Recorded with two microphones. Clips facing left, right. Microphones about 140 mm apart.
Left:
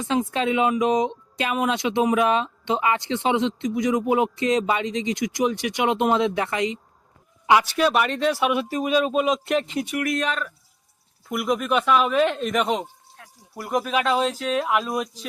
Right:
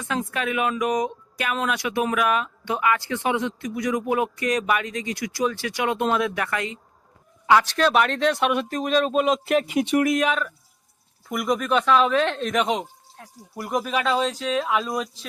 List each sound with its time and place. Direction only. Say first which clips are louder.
0.0 s speech: left 4 dB; 25° left (ahead or behind); by 9.7 s 5° right (ahead or behind)
9.8 s speech: right 5 dB; 25° right (ahead or behind)
10.2 s speech: right 3 dB; 5° right (ahead or behind)
13.2 s a sound: right 4 dB; 40° right (ahead or behind)
13.6 s speech: left 1 dB; centre (ahead or behind)